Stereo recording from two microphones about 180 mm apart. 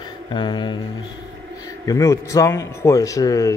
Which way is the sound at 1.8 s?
15° left (ahead or behind).